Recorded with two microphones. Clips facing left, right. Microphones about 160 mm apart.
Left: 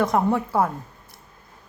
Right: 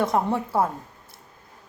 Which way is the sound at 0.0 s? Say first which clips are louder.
Left 2 dB; 25° right (ahead or behind).